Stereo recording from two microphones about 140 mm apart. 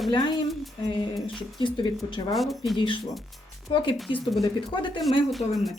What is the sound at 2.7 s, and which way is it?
Speech, 35° left (ahead or behind).